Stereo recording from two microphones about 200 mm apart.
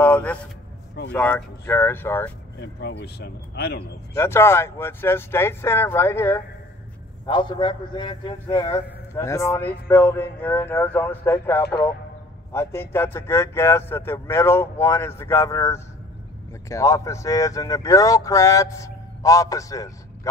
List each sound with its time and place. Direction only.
0.0 s a sound: 5° left (ahead or behind)
1.1 s speech: 10° left (ahead or behind)
2.6 s speech: 55° left (ahead or behind)
4.1 s speech: 10° left (ahead or behind)
7.2 s a man's voice: 25° left (ahead or behind)